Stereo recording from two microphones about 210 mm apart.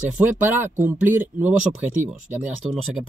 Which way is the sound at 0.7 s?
35° right (ahead or behind).